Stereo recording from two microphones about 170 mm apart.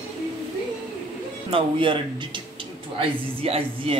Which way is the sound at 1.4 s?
30° right (ahead or behind).